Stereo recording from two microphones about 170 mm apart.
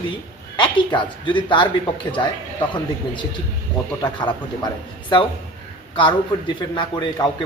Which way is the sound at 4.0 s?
25° left (ahead or behind).